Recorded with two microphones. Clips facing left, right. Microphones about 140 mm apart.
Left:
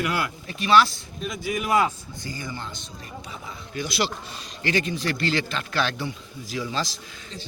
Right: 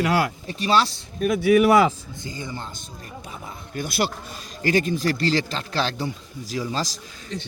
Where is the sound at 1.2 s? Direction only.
65° right (ahead or behind).